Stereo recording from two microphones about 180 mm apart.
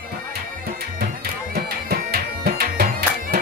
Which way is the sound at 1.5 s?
60° right (ahead or behind).